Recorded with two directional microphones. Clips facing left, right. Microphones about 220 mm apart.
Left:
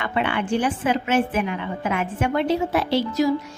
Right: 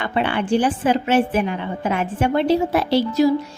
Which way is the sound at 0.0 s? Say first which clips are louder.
Right 2 dB; 35° right (ahead or behind).